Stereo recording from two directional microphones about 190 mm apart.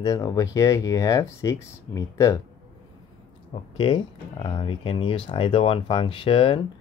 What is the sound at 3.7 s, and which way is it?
Speech, 25° left (ahead or behind).